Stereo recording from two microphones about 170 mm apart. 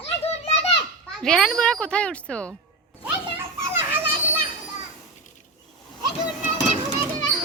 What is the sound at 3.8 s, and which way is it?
Children playing, 10° right (ahead or behind).